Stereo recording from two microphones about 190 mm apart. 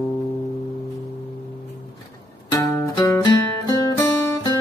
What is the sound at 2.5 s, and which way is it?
Music, 20° left (ahead or behind).